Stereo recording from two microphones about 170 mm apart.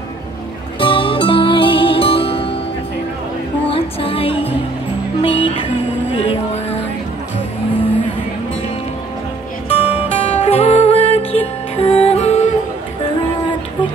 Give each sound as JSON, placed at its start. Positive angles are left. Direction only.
{"t": 0.7, "sound": "music", "side_deg": 30}
{"t": 3.7, "sound": "music", "side_deg": 35}
{"t": 9.7, "sound": "music", "side_deg": 35}